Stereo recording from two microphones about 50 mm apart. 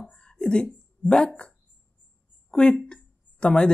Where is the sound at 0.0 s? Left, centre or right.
Centre.